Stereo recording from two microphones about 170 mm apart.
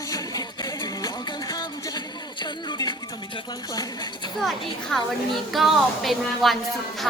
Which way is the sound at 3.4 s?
25° left (ahead or behind).